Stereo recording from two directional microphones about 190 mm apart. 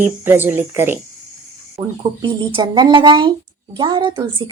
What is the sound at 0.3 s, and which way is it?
Speech, 10° right (ahead or behind).